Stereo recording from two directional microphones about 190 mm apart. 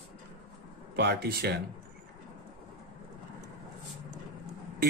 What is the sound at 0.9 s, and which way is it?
Speech, 60° right (ahead or behind).